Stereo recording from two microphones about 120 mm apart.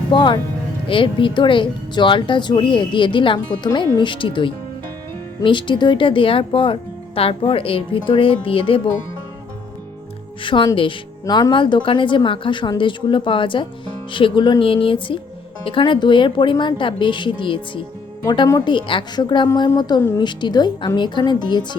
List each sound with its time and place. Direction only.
0.1 s a woman's voice: 40° left (ahead or behind)
10.4 s a woman's voice: 45° left (ahead or behind)
18.3 s a woman's voice: 30° left (ahead or behind)
18.6 s a woman's voice: 40° left (ahead or behind)